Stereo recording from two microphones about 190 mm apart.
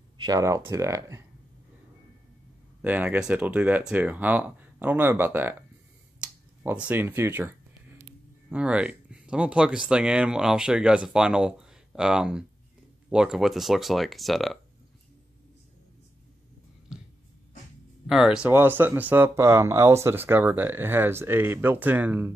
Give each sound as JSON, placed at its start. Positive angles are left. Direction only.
{"t": 0.2, "sound": "speech", "side_deg": -20}
{"t": 2.8, "sound": "speech", "side_deg": -10}
{"t": 6.6, "sound": "speech", "side_deg": -10}
{"t": 16.9, "sound": "a sound", "side_deg": -5}
{"t": 18.0, "sound": "speech", "side_deg": -5}